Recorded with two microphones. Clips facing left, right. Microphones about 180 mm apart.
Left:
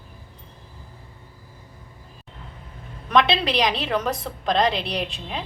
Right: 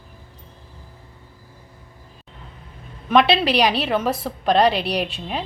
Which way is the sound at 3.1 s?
5° right (ahead or behind).